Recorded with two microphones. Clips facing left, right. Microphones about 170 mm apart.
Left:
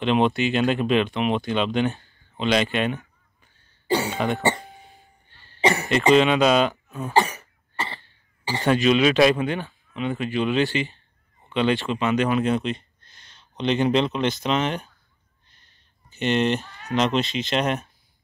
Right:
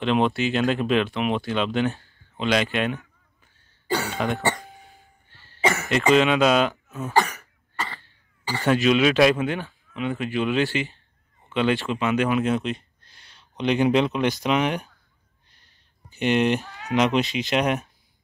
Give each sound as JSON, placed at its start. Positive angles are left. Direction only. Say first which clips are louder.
{"t": 0.0, "sound": "speech", "louder": "left 1 dB", "side_deg": 0}
{"t": 3.9, "sound": "cough", "louder": "left 2 dB", "side_deg": 10}
{"t": 4.5, "sound": "hiccup", "louder": "left 2 dB", "side_deg": 20}
{"t": 5.9, "sound": "speech", "louder": "left 1 dB", "side_deg": -5}
{"t": 7.0, "sound": "cough", "louder": "left 1 dB", "side_deg": 15}
{"t": 8.6, "sound": "speech", "louder": "left 1 dB", "side_deg": -5}
{"t": 11.4, "sound": "a sound", "louder": "left 1 dB", "side_deg": -5}
{"t": 11.9, "sound": "speech", "louder": "left 1 dB", "side_deg": -5}
{"t": 15.5, "sound": "a sound", "louder": "left 1 dB", "side_deg": -10}
{"t": 16.9, "sound": "speech", "louder": "right 1 dB", "side_deg": -10}